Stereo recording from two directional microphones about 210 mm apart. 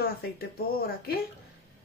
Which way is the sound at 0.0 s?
45° left (ahead or behind).